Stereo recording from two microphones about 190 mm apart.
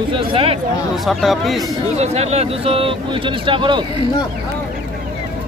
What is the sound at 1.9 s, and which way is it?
Speech, 35° right (ahead or behind).